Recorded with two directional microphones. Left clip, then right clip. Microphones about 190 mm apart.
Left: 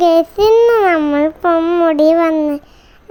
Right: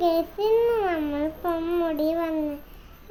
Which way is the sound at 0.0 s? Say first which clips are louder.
Left 13 dB; 45° left (ahead or behind).